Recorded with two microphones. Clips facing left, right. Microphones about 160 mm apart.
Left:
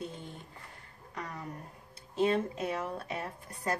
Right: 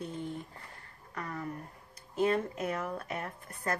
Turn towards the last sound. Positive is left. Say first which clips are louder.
# even
turn(degrees=25)  # may be behind; listen again after turning